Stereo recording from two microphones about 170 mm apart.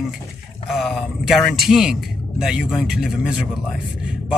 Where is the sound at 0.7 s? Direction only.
Centre (ahead or behind).